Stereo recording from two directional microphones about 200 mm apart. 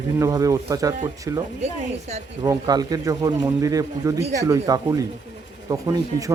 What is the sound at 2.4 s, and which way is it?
A man's voice, 20° right (ahead or behind).